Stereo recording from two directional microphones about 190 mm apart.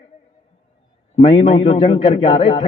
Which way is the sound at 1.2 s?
30° left (ahead or behind).